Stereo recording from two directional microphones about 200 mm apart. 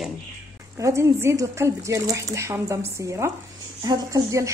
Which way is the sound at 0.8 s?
15° right (ahead or behind).